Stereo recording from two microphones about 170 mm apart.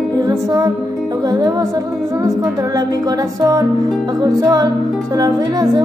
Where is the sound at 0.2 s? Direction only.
20° right (ahead or behind).